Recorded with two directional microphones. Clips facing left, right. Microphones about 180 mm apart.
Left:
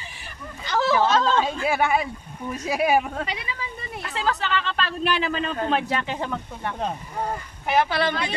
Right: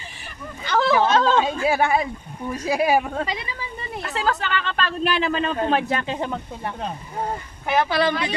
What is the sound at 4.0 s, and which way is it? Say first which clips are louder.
Speech: right 2 dB; 50° right (ahead or behind).